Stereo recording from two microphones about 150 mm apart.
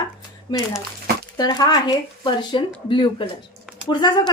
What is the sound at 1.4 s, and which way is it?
Speech, 30° left (ahead or behind).